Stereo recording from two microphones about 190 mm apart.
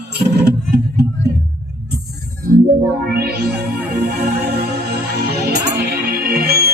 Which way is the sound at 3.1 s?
55° right (ahead or behind).